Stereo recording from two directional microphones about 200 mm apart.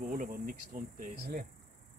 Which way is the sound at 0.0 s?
50° right (ahead or behind).